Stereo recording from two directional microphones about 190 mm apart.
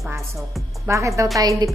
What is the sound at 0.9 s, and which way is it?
Speech, 15° right (ahead or behind).